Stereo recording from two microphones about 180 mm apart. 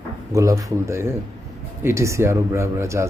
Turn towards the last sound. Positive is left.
turn(degrees=-15)  # may be behind; listen again after turning